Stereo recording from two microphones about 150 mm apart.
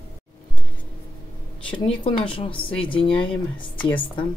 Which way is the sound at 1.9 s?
40° left (ahead or behind).